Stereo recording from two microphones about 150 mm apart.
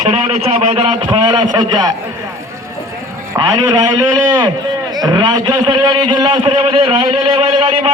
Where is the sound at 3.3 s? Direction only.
25° right (ahead or behind).